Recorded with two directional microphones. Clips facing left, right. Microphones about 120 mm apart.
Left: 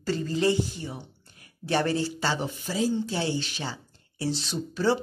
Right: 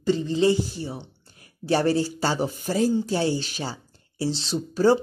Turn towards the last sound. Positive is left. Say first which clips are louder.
# right 5 dB
turn(degrees=-30)  # may be behind; listen again after turning